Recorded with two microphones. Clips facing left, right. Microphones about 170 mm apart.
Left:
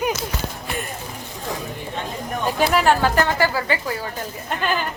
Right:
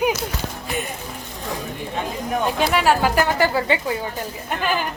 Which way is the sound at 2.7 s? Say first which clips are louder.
Left 1 dB; centre (ahead or behind).